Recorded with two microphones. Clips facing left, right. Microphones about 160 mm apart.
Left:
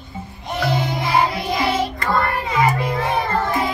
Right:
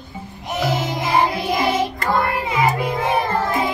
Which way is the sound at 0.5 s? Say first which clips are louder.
Even; 5° right (ahead or behind).